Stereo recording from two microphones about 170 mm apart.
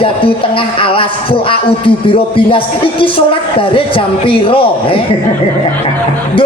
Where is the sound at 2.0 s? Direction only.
30° left (ahead or behind).